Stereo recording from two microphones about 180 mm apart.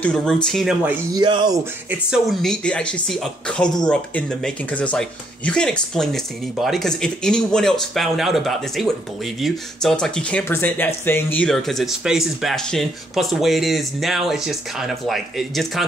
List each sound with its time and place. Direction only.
0.0 s speech: 5° left (ahead or behind)
1.1 s speech: 25° right (ahead or behind)
1.9 s speech: 5° right (ahead or behind)